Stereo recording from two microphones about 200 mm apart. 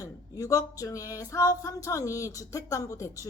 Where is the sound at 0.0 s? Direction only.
15° left (ahead or behind).